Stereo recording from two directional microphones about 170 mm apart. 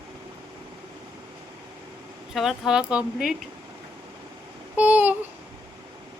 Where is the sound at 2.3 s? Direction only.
Centre (ahead or behind).